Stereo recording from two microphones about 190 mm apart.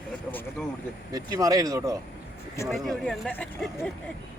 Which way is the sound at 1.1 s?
20° right (ahead or behind).